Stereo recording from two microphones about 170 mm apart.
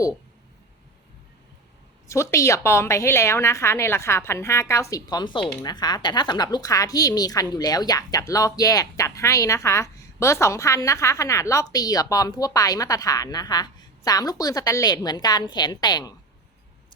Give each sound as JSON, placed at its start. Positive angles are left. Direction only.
{"t": 2.0, "sound": "a woman's voice", "side_deg": 15}